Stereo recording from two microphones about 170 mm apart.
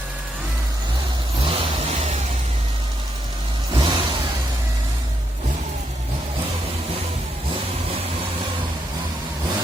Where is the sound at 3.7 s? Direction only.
25° right (ahead or behind).